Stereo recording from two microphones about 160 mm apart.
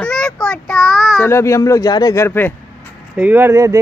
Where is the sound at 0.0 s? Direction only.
5° left (ahead or behind).